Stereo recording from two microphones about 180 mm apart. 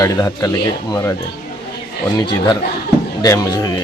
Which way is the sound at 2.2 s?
25° left (ahead or behind).